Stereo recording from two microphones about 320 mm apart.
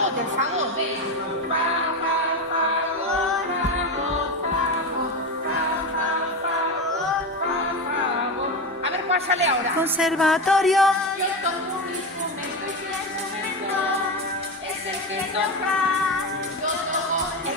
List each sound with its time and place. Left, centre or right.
8.8 s music: centre
9.8 s a woman's voice: centre